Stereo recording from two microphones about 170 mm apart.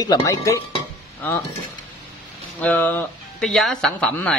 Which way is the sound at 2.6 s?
10° left (ahead or behind).